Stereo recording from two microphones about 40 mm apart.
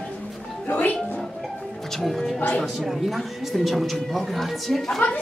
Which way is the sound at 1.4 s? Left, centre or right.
Centre.